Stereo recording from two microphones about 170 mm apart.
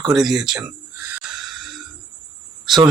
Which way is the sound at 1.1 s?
Centre (ahead or behind).